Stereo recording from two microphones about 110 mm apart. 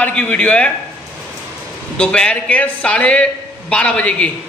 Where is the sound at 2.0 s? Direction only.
10° left (ahead or behind).